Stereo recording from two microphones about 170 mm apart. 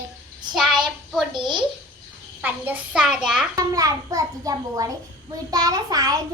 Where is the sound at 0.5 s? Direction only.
Centre (ahead or behind).